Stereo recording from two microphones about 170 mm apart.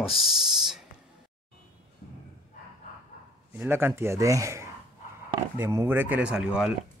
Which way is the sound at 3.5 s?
15° right (ahead or behind).